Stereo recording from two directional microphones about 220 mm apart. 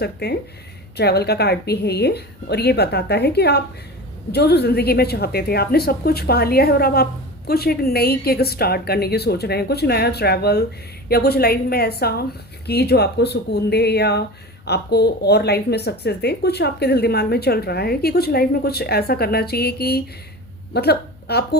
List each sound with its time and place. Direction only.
0.0 s a woman's voice: 45° left (ahead or behind)